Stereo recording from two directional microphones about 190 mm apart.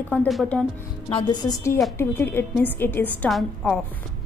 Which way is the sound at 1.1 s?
20° left (ahead or behind).